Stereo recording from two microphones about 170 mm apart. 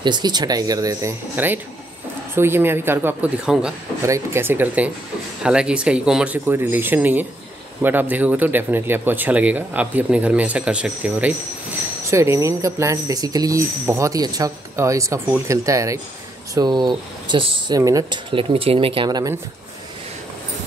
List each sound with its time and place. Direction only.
0.0 s speech: 25° right (ahead or behind)